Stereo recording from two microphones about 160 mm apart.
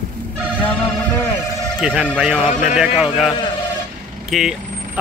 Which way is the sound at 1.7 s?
Centre (ahead or behind).